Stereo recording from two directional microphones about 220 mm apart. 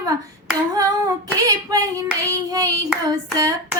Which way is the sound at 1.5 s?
15° right (ahead or behind).